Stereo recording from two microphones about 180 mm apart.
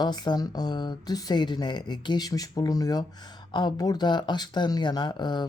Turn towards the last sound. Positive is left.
turn(degrees=25)  # may be behind; listen again after turning